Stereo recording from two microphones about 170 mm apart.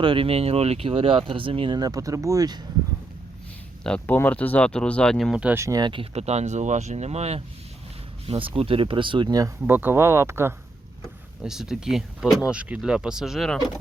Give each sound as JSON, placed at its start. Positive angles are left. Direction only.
{"t": 0.0, "sound": "speech", "side_deg": -30}
{"t": 3.8, "sound": "speech", "side_deg": 10}
{"t": 9.6, "sound": "speech", "side_deg": -10}
{"t": 11.4, "sound": "speech", "side_deg": -5}